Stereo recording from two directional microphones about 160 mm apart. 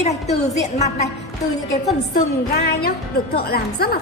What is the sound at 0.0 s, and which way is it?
Speech, 45° left (ahead or behind).